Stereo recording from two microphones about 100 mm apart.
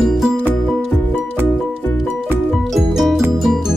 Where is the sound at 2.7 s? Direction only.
Centre (ahead or behind).